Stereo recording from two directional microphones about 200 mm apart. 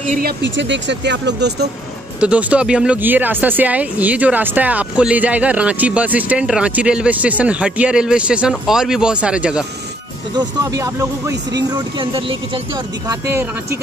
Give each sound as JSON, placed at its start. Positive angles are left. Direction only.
{"t": 0.4, "sound": "speech", "side_deg": -65}
{"t": 2.1, "sound": "speech", "side_deg": -5}
{"t": 10.3, "sound": "speech", "side_deg": -20}
{"t": 13.3, "sound": "speech", "side_deg": -10}